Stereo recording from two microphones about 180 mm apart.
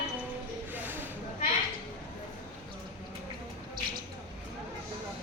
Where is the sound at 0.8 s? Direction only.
10° right (ahead or behind).